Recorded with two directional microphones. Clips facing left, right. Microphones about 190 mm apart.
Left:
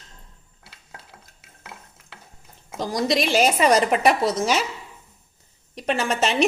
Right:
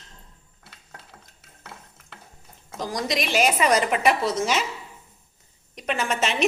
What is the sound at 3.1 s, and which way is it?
A woman's voice, 35° left (ahead or behind).